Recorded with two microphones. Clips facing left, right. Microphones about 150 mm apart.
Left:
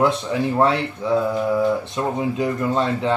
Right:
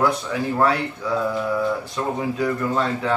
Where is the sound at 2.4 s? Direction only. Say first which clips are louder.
Left 1 dB; 25° left (ahead or behind).